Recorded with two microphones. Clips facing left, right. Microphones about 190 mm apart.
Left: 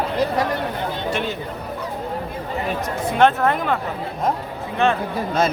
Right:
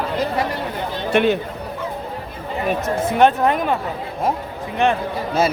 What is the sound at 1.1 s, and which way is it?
Speech, 65° right (ahead or behind).